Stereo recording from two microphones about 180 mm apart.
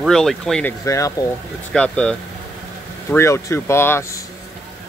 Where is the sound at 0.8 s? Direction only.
15° left (ahead or behind).